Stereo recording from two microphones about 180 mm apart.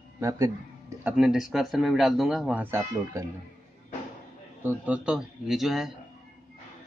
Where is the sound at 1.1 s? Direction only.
Centre (ahead or behind).